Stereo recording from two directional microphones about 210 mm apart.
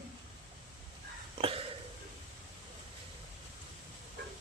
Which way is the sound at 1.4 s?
25° right (ahead or behind).